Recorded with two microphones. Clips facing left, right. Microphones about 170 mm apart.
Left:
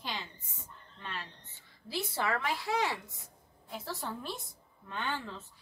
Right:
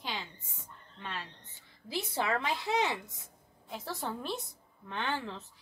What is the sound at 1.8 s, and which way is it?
A woman's voice, 15° right (ahead or behind).